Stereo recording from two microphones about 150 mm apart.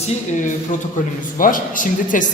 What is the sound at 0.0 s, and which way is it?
Speech, 55° left (ahead or behind).